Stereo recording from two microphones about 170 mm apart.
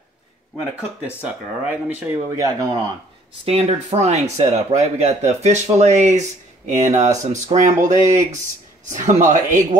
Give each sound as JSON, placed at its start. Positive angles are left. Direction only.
{"t": 1.2, "sound": "speech", "side_deg": -5}
{"t": 2.3, "sound": "speech", "side_deg": -20}
{"t": 3.4, "sound": "speech", "side_deg": -40}